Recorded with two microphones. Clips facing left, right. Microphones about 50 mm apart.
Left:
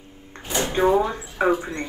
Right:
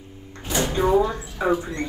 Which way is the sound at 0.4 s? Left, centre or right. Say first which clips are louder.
Left 1 dB; left.